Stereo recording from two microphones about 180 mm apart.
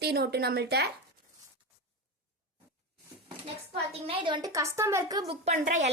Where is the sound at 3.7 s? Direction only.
30° right (ahead or behind).